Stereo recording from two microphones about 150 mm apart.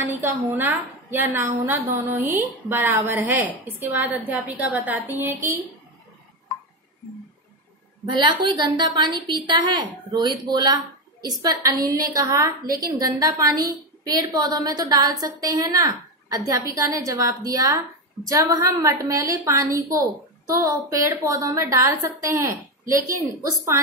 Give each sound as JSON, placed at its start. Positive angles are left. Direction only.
{"t": 0.0, "sound": "a woman's voice", "side_deg": -15}
{"t": 8.2, "sound": "a woman's voice", "side_deg": -30}